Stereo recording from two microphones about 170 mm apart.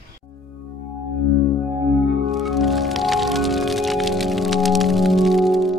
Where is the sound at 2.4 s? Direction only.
Centre (ahead or behind).